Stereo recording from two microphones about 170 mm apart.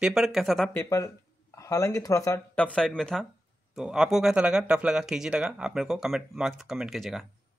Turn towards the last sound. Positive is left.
turn(degrees=0)  # may be behind; listen again after turning